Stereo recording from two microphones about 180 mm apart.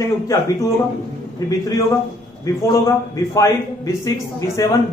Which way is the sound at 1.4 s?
20° left (ahead or behind).